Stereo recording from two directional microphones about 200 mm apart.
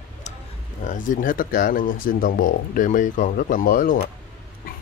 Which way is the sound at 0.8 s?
40° left (ahead or behind).